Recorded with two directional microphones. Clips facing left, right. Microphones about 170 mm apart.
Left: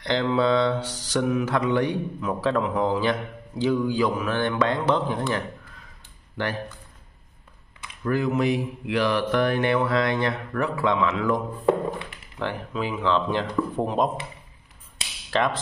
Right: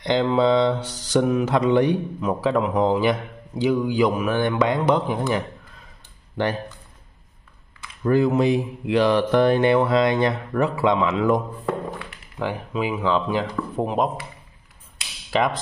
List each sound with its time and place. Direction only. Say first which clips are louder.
0.0 s mantra: right 3 dB; 20° right (ahead or behind)
8.0 s speech: right 5 dB; 30° right (ahead or behind)
12.4 s mantra: right 3 dB; 10° right (ahead or behind)